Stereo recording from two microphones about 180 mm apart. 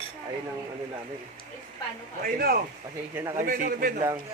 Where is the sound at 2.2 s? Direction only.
55° right (ahead or behind).